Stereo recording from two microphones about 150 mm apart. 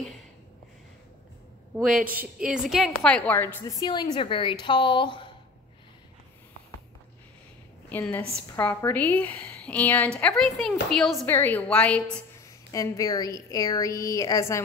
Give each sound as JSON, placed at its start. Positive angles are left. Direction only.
{"t": 1.8, "sound": "a woman's voice", "side_deg": -5}
{"t": 3.5, "sound": "a woman's voice", "side_deg": 25}
{"t": 7.9, "sound": "a woman's voice", "side_deg": 15}
{"t": 11.2, "sound": "a woman's voice", "side_deg": 15}
{"t": 12.7, "sound": "a woman's voice", "side_deg": 20}